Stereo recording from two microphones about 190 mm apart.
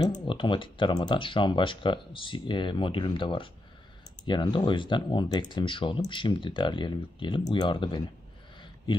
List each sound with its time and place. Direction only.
0.2 s speech: 25° left (ahead or behind)